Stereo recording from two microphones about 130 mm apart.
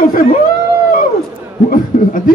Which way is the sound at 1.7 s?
90° left.